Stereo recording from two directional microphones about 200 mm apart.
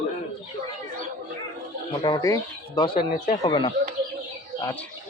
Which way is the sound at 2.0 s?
20° left (ahead or behind).